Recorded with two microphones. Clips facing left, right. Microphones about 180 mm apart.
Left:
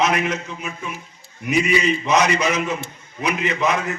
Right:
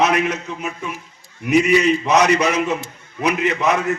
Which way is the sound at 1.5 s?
65° right (ahead or behind).